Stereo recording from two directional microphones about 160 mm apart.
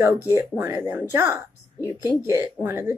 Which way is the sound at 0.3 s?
15° right (ahead or behind).